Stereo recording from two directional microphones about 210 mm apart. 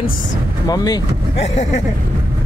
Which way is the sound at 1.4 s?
35° left (ahead or behind).